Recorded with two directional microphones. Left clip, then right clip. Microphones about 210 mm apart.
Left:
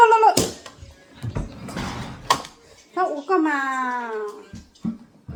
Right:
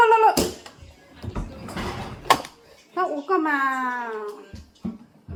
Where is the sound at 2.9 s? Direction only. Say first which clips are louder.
Left 2 dB; 20° left (ahead or behind).